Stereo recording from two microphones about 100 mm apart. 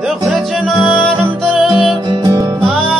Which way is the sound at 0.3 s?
Centre (ahead or behind).